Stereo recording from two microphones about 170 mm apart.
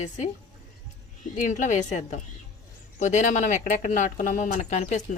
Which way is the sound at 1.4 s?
45° left (ahead or behind).